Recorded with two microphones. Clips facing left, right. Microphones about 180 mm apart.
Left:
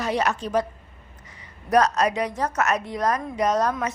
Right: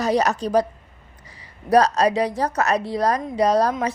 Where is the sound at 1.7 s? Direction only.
35° right (ahead or behind).